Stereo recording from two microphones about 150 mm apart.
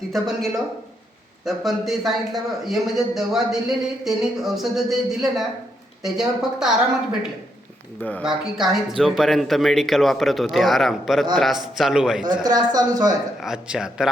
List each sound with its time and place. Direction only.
0.1 s a man's voice: centre (ahead or behind)
8.2 s a man's voice: centre (ahead or behind)
12.2 s a man's voice: 30° right (ahead or behind)
13.4 s a man's voice: 5° right (ahead or behind)